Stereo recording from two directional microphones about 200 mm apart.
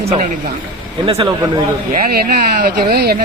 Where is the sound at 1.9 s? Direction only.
50° right (ahead or behind).